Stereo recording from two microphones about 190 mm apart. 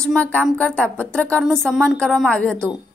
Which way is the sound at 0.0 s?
5° left (ahead or behind).